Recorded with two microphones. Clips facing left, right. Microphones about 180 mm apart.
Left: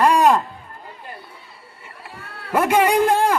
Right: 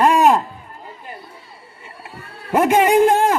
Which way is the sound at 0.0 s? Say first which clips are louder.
Right 1 dB; 15° right (ahead or behind).